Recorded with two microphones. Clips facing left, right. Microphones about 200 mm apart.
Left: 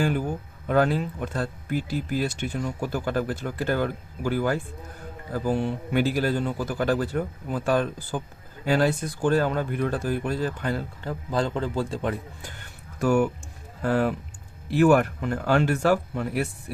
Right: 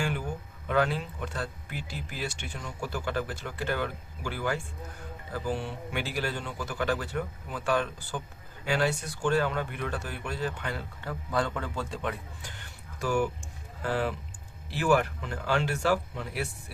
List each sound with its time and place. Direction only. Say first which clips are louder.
0.0 s speech: left 7 dB; 40° left (ahead or behind)
13.0 s speech: left 6 dB; 55° left (ahead or behind)